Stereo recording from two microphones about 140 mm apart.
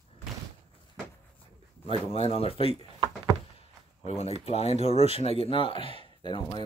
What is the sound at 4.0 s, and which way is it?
Speech, 50° left (ahead or behind).